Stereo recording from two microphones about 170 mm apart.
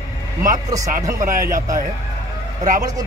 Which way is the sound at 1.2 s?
55° right (ahead or behind).